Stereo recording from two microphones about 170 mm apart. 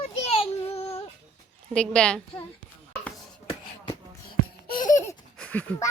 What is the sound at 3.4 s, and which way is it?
Beatboxing, 30° left (ahead or behind).